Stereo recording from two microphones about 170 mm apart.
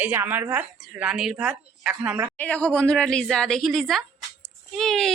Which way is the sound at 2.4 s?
10° left (ahead or behind).